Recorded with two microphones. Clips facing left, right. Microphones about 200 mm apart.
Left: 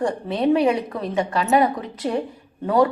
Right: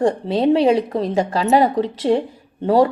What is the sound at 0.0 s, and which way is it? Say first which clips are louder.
A woman's voice: right 4 dB; 30° right (ahead or behind).